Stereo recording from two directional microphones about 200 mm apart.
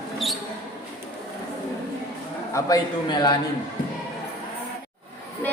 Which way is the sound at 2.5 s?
20° left (ahead or behind).